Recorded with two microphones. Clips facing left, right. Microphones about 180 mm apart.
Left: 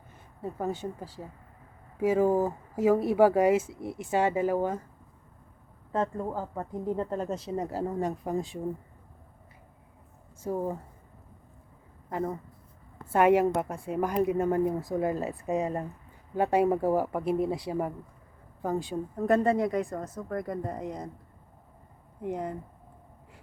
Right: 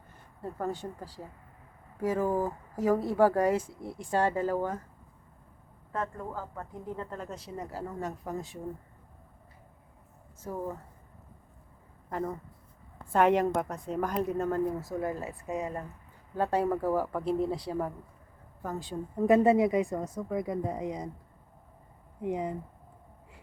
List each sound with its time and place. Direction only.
0.6 s speech: 20° left (ahead or behind)
3.1 s speech: 10° left (ahead or behind)
4.0 s speech: 20° left (ahead or behind)
5.9 s speech: 25° left (ahead or behind)
10.5 s speech: 25° left (ahead or behind)
13.1 s speech: 5° left (ahead or behind); by 15.9 s 25° left (ahead or behind)
16.3 s speech: 15° left (ahead or behind)
16.6 s speech: 25° left (ahead or behind)
19.1 s a woman's voice: 5° right (ahead or behind)
22.2 s a woman's voice: centre (ahead or behind)